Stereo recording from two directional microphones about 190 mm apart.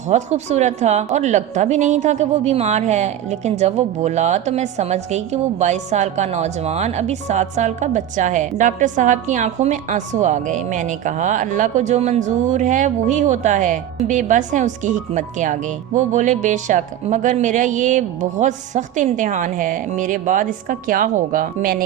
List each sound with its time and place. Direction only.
0.1 s a woman's voice: 35° right (ahead or behind)